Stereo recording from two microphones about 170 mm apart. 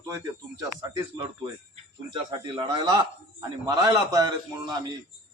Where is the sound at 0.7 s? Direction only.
20° right (ahead or behind).